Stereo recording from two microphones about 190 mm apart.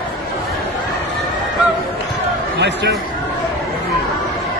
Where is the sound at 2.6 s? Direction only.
65° right (ahead or behind).